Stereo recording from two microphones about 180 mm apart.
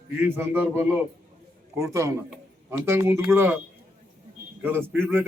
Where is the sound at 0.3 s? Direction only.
10° right (ahead or behind).